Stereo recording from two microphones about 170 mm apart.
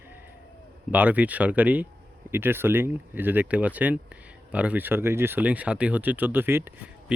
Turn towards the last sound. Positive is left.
turn(degrees=-15)  # may be behind; listen again after turning